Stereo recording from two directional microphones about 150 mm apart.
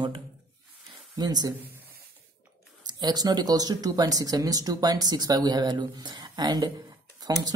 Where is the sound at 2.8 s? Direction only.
30° right (ahead or behind).